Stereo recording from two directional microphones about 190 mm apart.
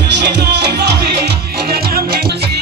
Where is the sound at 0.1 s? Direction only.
65° right (ahead or behind).